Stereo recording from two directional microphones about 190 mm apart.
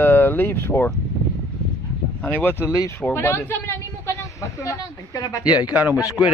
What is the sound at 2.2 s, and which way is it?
Speech, 10° left (ahead or behind).